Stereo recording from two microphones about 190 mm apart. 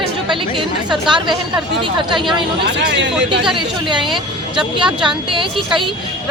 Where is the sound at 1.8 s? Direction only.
25° right (ahead or behind).